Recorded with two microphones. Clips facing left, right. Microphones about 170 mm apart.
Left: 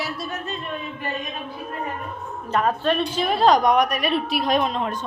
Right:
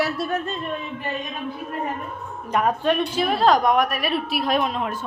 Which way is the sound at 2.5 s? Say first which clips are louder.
Right 1 dB; 15° right (ahead or behind).